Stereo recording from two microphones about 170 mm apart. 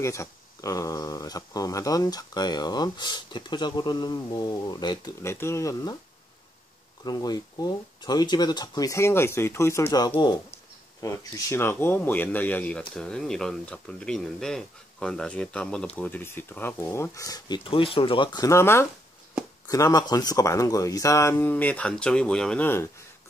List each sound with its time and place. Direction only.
0.0 s speech: 15° left (ahead or behind)
7.1 s a man's voice: 25° left (ahead or behind)